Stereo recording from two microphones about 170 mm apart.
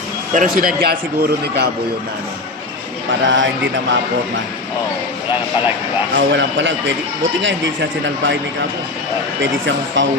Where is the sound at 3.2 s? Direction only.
90° right.